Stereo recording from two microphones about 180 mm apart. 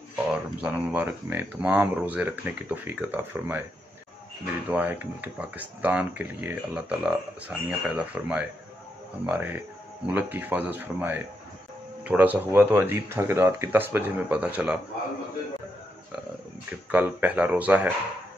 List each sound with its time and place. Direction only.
0.1 s speech: 5° right (ahead or behind)
4.6 s speech: 10° right (ahead or behind)
16.9 s speech: 10° right (ahead or behind)